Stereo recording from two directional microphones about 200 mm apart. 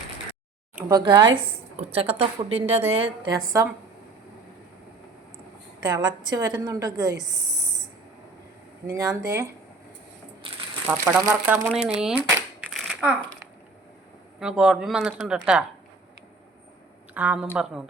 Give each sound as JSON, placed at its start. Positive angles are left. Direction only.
{"t": 0.9, "sound": "a woman's voice", "side_deg": -20}
{"t": 5.8, "sound": "a woman's voice", "side_deg": -20}
{"t": 8.9, "sound": "speech", "side_deg": -15}
{"t": 10.4, "sound": "a sound", "side_deg": -25}
{"t": 10.8, "sound": "speech", "side_deg": -10}
{"t": 11.7, "sound": "a sound", "side_deg": -5}
{"t": 14.3, "sound": "speech", "side_deg": -5}
{"t": 17.2, "sound": "speech", "side_deg": -10}